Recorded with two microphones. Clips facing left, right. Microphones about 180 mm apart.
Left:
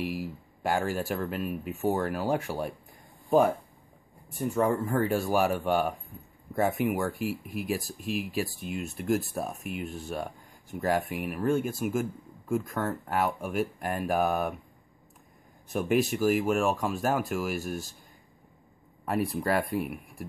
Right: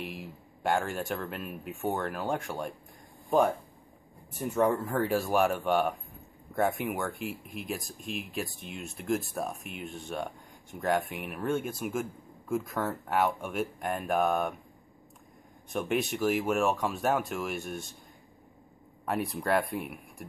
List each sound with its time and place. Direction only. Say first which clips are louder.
0.0 s speech: left 7 dB; 5° left (ahead or behind)
15.7 s speech: left 4 dB; centre (ahead or behind)
19.0 s speech: left 2 dB; centre (ahead or behind)